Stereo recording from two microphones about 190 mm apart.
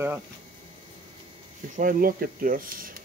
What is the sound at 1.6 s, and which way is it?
Speech, 45° right (ahead or behind).